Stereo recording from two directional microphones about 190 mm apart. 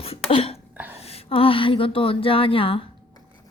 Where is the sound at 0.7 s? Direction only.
10° right (ahead or behind).